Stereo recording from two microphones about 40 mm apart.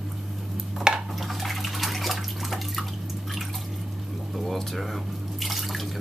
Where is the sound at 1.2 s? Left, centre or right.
Centre.